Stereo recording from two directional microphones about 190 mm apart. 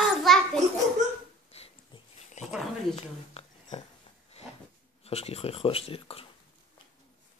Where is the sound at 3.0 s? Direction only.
35° left (ahead or behind).